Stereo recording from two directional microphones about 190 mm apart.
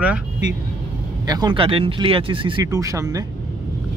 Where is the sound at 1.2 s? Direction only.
20° right (ahead or behind).